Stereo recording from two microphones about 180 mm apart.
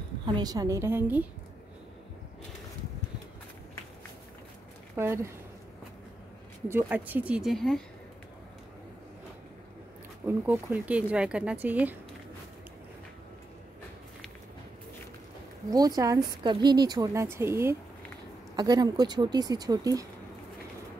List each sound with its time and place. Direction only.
0.3 s speech: 20° right (ahead or behind)
4.9 s speech: 15° right (ahead or behind)
6.7 s speech: 10° right (ahead or behind)
10.2 s speech: 10° right (ahead or behind)
15.7 s a woman's voice: 20° right (ahead or behind)